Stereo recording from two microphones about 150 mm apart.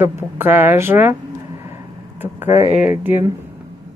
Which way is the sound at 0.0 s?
15° right (ahead or behind).